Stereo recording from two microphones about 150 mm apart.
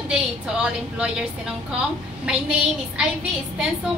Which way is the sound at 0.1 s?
5° right (ahead or behind).